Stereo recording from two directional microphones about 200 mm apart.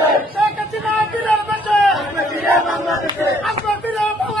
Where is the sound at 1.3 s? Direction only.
5° left (ahead or behind).